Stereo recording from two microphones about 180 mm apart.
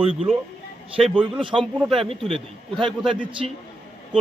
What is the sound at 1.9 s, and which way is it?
Speech, centre (ahead or behind).